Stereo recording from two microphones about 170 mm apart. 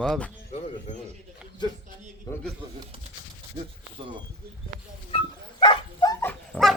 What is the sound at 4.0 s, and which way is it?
Speech, 30° right (ahead or behind).